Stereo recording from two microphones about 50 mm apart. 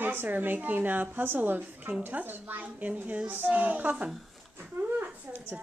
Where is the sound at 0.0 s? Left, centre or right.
Right.